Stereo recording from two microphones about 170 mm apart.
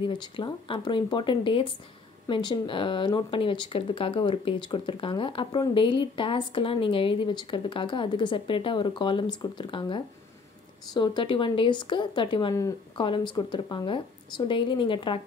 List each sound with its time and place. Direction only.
0.0 s speech: 25° left (ahead or behind)